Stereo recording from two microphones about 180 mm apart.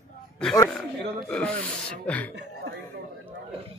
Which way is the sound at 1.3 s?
10° left (ahead or behind).